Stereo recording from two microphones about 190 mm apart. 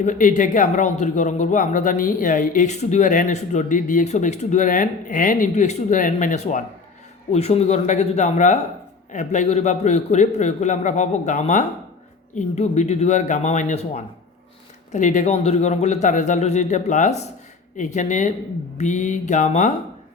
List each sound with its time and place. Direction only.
0.0 s a man's voice: 45° left (ahead or behind)